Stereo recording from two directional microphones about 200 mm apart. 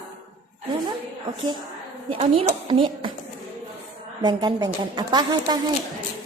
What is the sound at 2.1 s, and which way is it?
Music, 25° right (ahead or behind).